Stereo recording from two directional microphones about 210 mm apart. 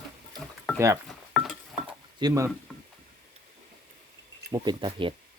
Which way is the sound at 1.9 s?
15° right (ahead or behind).